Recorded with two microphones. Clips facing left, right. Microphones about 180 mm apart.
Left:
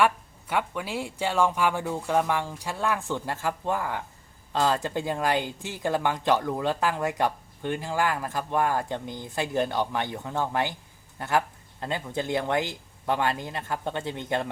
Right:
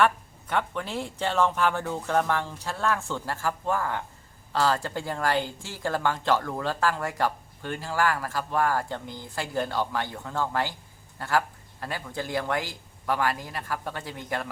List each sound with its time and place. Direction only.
0.0 s speech: 10° left (ahead or behind)